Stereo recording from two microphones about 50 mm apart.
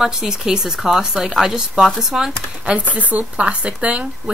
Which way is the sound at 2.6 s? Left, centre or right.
Right.